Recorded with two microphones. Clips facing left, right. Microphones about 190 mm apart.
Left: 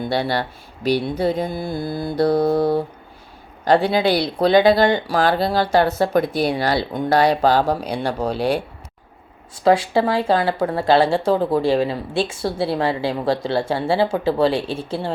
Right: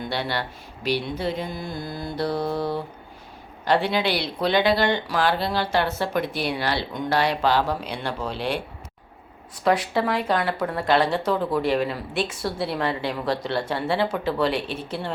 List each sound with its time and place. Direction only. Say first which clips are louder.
0.1 s speech: left 7 dB; 40° left (ahead or behind)
1.5 s mantra: left 7 dB; 5° left (ahead or behind)
2.0 s speech: left 9 dB; 40° left (ahead or behind)
9.6 s speech: left 5 dB; 30° left (ahead or behind)